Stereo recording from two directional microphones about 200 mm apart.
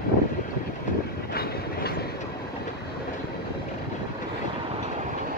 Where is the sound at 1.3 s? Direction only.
50° left (ahead or behind).